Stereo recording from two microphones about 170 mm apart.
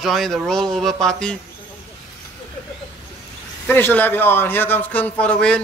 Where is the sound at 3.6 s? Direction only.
10° left (ahead or behind).